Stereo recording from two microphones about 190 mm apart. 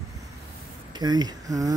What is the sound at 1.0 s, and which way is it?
Speech, 20° right (ahead or behind).